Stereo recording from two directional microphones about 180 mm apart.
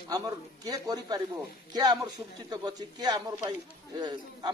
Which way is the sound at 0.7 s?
20° right (ahead or behind).